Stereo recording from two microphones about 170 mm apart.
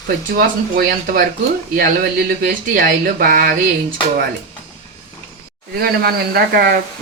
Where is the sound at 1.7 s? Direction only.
60° right (ahead or behind).